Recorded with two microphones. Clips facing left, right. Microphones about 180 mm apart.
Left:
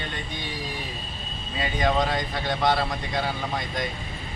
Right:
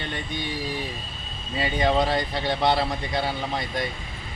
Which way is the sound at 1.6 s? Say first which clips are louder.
Right 2 dB; 30° right (ahead or behind).